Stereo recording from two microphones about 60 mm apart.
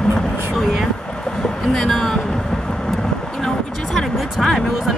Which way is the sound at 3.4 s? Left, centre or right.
Centre.